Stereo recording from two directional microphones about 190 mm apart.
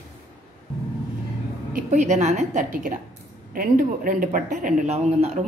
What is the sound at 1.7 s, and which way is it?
A woman's voice, 40° right (ahead or behind).